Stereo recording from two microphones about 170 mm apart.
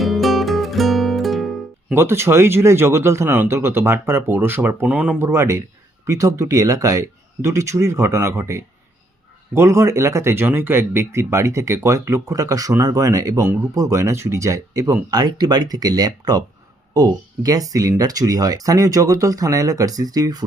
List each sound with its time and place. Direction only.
0.0 s music: centre (ahead or behind)
2.0 s speech: 15° right (ahead or behind)